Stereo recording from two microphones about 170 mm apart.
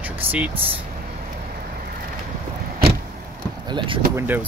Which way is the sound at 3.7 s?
30° right (ahead or behind).